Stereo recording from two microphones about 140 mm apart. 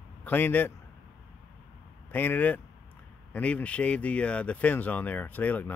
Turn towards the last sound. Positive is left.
turn(degrees=10)  # may be behind; listen again after turning